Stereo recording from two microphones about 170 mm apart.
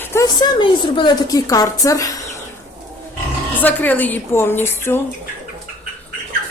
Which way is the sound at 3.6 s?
10° left (ahead or behind).